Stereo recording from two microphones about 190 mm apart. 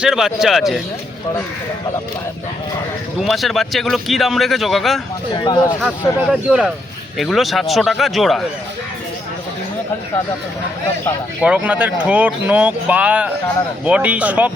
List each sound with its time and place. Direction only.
0.0 s speech: centre (ahead or behind)
3.2 s speech: centre (ahead or behind)
5.3 s speech: 25° left (ahead or behind)
6.3 s speech: 5° right (ahead or behind)
11.4 s speech: 5° right (ahead or behind)